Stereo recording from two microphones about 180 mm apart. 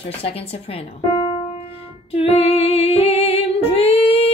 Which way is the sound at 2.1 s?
35° left (ahead or behind).